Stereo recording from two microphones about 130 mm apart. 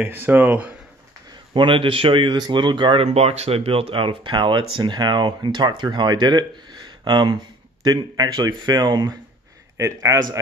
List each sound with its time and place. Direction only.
0.0 s speech: 15° right (ahead or behind)
1.5 s speech: 40° right (ahead or behind)
3.1 s speech: 55° right (ahead or behind); by 9.1 s 35° right (ahead or behind)
9.8 s speech: 25° right (ahead or behind)